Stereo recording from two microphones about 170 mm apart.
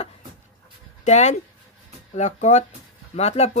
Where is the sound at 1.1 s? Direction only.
40° left (ahead or behind).